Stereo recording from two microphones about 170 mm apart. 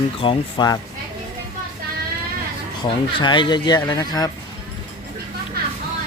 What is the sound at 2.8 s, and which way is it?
A man's voice, 25° left (ahead or behind).